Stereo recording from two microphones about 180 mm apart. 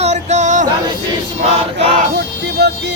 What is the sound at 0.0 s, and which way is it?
Music, 40° right (ahead or behind).